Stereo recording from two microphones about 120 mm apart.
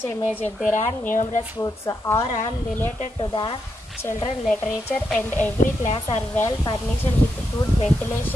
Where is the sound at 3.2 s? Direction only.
45° left (ahead or behind).